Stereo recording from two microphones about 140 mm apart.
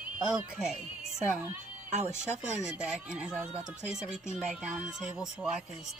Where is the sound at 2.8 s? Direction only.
5° right (ahead or behind).